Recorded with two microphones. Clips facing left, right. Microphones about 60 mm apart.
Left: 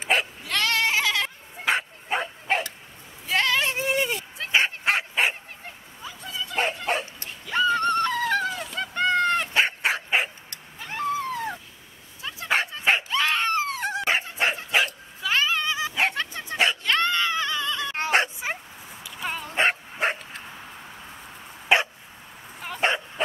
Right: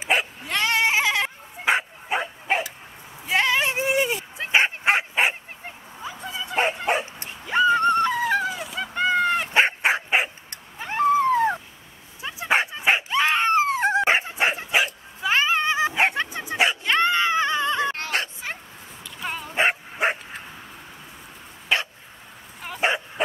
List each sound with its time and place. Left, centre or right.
0.0 s dog: centre
3.3 s a sound: centre
4.4 s dog: right; by 9.5 s centre
9.5 s dog: right
10.5 s cat: right
12.2 s dog: centre
15.2 s dog: right
17.9 s a sound: left
19.0 s dog: centre
21.7 s dog: left
22.6 s dog: centre